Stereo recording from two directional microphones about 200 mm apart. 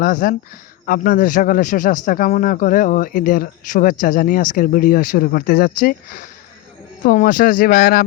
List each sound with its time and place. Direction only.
0.0 s a man's voice: 45° left (ahead or behind)